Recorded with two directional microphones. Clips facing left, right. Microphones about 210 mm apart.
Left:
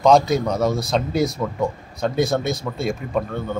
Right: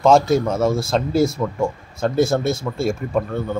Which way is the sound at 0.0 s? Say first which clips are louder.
Right 1 dB; centre (ahead or behind).